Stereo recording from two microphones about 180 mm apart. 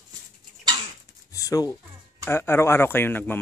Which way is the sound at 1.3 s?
20° left (ahead or behind).